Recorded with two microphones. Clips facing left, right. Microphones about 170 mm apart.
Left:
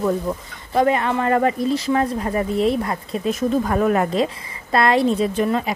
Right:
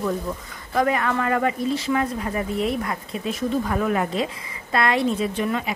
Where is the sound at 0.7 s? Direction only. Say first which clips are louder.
Left 3 dB; 25° left (ahead or behind).